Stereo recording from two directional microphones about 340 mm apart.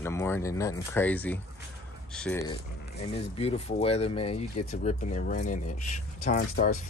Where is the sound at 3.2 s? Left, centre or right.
Centre.